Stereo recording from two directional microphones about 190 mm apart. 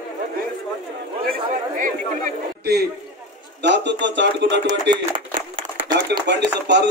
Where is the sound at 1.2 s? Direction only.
50° right (ahead or behind); by 4.5 s 70° right (ahead or behind).